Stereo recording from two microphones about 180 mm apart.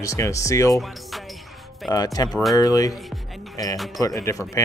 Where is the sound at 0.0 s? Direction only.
15° left (ahead or behind).